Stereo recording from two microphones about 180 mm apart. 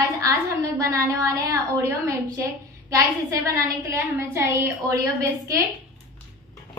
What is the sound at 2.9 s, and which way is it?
A woman's voice, 20° right (ahead or behind).